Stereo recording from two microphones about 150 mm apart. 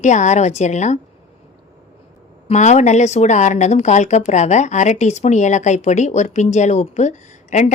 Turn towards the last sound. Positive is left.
turn(degrees=50)  # may be behind; listen again after turning